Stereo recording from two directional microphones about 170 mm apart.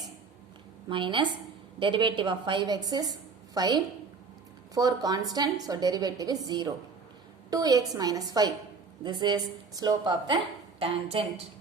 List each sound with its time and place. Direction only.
0.9 s a woman's voice: 30° right (ahead or behind)